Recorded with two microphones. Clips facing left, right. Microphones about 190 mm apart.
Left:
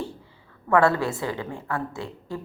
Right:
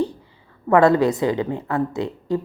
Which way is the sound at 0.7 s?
20° right (ahead or behind).